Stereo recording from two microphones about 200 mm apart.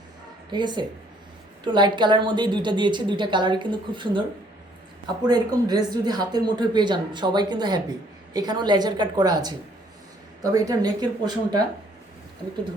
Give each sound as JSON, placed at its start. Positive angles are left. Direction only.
{"t": 0.5, "sound": "speech", "side_deg": -20}